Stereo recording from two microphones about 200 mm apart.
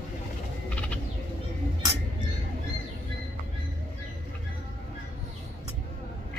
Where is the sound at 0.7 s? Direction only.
5° left (ahead or behind).